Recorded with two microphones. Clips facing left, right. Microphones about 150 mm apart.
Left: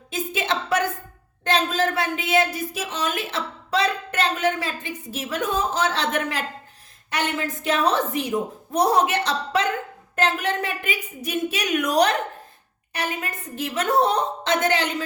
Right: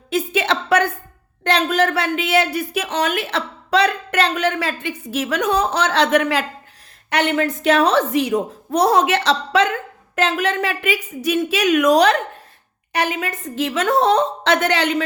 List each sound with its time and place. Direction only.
0.1 s a sound: 70° right (ahead or behind)
1.5 s speech: 70° right (ahead or behind); by 6.4 s 90° right
7.1 s a woman's voice: 70° right (ahead or behind)